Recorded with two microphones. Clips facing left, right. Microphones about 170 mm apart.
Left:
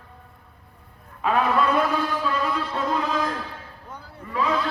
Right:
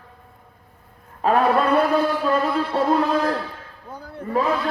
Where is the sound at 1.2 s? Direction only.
40° right (ahead or behind).